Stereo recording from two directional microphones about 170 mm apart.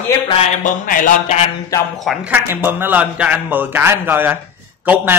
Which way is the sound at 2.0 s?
5° right (ahead or behind).